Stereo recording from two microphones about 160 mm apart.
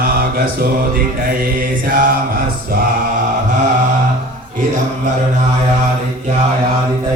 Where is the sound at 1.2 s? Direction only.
65° right (ahead or behind).